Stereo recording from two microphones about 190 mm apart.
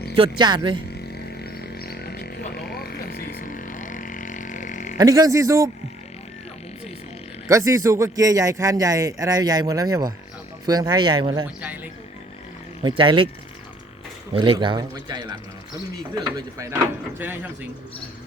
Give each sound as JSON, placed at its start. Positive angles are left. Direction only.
{"t": 0.2, "sound": "speech", "side_deg": -25}
{"t": 0.9, "sound": "a sound", "side_deg": 60}
{"t": 4.9, "sound": "a man's voice", "side_deg": -20}
{"t": 7.4, "sound": "a man's voice", "side_deg": -15}
{"t": 11.6, "sound": "a sound", "side_deg": -10}
{"t": 12.8, "sound": "speech", "side_deg": -25}
{"t": 14.3, "sound": "a man's voice", "side_deg": -25}